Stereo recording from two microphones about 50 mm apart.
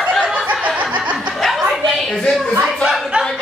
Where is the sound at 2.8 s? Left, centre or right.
Centre.